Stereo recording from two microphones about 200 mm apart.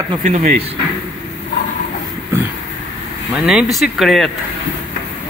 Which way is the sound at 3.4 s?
Centre (ahead or behind).